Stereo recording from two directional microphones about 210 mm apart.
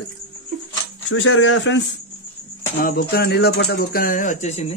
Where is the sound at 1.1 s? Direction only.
70° left (ahead or behind).